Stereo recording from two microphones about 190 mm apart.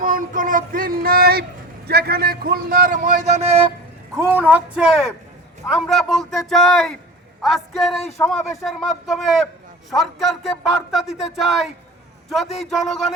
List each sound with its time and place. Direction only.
0.0 s a man's voice: 45° right (ahead or behind)
4.2 s a man's voice: 10° right (ahead or behind)